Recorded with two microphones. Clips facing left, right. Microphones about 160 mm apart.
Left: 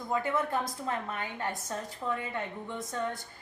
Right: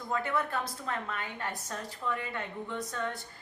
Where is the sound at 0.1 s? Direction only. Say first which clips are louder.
Left 2 dB; 20° left (ahead or behind).